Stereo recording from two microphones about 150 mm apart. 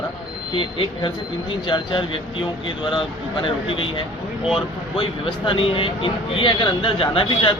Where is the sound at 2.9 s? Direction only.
35° left (ahead or behind).